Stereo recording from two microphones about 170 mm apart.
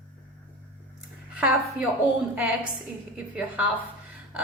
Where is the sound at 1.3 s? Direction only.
10° right (ahead or behind).